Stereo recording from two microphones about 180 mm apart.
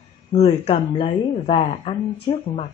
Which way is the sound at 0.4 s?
30° left (ahead or behind).